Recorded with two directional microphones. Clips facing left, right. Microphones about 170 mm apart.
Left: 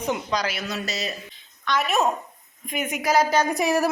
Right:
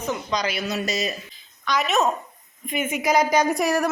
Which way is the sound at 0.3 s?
5° left (ahead or behind).